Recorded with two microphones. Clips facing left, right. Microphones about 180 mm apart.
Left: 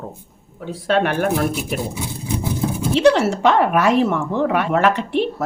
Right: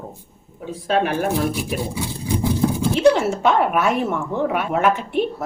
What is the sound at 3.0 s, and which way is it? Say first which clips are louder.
Speech: left 2 dB; 80° left.